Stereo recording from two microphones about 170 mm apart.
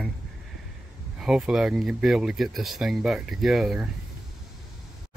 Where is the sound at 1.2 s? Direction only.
5° right (ahead or behind).